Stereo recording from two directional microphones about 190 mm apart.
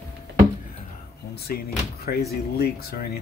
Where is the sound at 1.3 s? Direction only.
55° left (ahead or behind).